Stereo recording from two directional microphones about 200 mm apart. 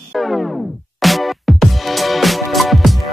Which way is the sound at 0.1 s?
Centre (ahead or behind).